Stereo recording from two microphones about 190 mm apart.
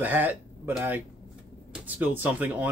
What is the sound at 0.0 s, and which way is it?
Speech, 10° right (ahead or behind).